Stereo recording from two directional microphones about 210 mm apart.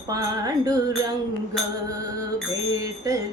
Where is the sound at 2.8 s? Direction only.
15° right (ahead or behind).